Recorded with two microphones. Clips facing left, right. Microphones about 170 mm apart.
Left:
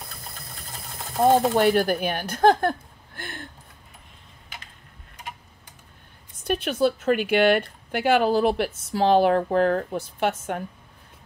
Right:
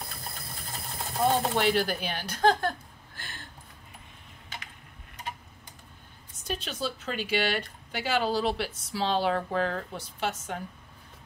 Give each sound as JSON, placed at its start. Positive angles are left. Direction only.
{"t": 1.2, "sound": "speech", "side_deg": 45}
{"t": 3.2, "sound": "a sound", "side_deg": 55}
{"t": 6.4, "sound": "a woman's voice", "side_deg": 60}